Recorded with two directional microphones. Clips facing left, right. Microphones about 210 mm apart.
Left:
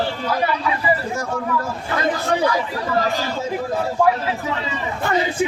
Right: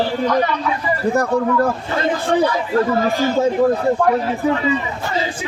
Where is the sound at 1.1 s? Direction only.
60° right (ahead or behind).